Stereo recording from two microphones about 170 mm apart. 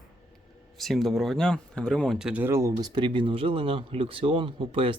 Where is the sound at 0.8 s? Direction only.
Centre (ahead or behind).